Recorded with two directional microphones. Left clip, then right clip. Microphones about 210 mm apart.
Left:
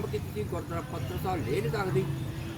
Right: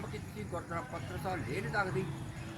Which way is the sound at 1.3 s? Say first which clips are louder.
Left 6 dB; 10° right (ahead or behind).